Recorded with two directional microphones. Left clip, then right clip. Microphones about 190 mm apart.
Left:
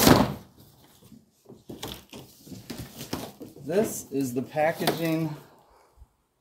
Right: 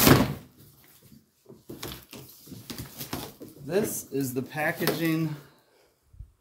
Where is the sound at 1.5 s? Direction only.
45° left (ahead or behind).